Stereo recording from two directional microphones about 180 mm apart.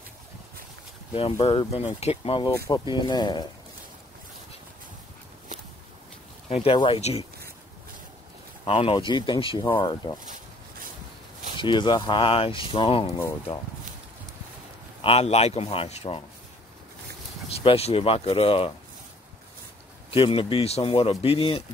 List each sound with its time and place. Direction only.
1.4 s speech: 35° left (ahead or behind)
2.5 s speech: 20° left (ahead or behind)
6.5 s speech: 30° left (ahead or behind)
8.6 s speech: 30° left (ahead or behind)
10.2 s a sound: 50° right (ahead or behind)
11.5 s speech: 25° left (ahead or behind)
15.0 s speech: 30° left (ahead or behind)
17.5 s speech: 35° left (ahead or behind)
20.1 s speech: 30° left (ahead or behind)